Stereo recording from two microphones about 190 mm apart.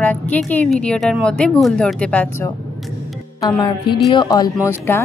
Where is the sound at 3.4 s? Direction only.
25° left (ahead or behind).